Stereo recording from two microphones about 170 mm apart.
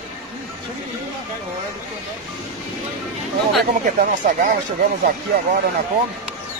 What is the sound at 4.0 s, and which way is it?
Speech, 50° right (ahead or behind).